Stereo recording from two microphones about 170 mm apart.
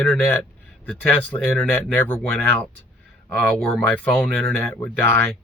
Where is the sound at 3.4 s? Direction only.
Centre (ahead or behind).